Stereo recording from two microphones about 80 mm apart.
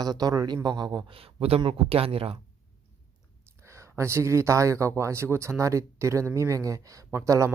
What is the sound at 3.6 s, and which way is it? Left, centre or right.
Speech, right.